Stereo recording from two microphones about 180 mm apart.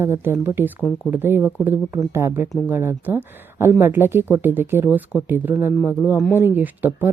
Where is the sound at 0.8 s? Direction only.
10° left (ahead or behind).